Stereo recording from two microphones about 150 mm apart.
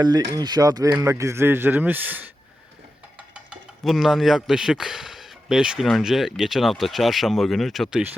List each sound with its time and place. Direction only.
0.0 s a man's voice: 25° right (ahead or behind); by 8.1 s 5° right (ahead or behind)